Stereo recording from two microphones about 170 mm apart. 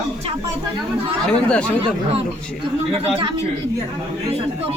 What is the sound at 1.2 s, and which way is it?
Speech, 5° left (ahead or behind).